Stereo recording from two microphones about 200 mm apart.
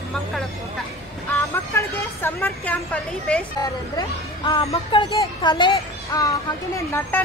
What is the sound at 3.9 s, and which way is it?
A woman's voice, 25° left (ahead or behind).